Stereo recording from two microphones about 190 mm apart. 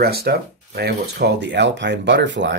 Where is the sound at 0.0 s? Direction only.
55° right (ahead or behind).